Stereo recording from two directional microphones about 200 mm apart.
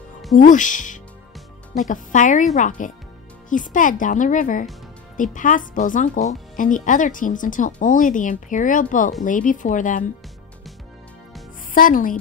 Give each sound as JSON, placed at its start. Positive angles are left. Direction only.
{"t": 0.3, "sound": "speech", "side_deg": 40}
{"t": 11.7, "sound": "speech", "side_deg": 45}